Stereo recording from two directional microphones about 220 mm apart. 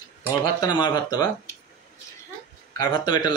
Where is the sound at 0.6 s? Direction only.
20° left (ahead or behind).